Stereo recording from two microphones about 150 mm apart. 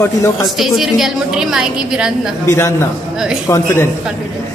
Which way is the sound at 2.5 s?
15° left (ahead or behind).